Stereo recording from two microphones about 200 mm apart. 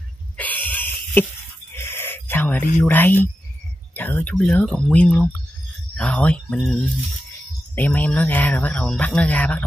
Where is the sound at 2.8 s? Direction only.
10° left (ahead or behind).